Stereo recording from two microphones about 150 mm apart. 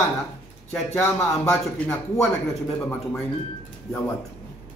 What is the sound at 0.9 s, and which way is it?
Speech, 15° left (ahead or behind).